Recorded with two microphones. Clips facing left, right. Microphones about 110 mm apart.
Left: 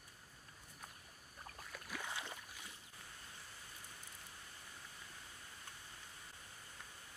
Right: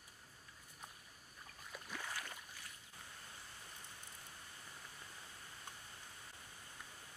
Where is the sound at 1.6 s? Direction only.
Centre (ahead or behind).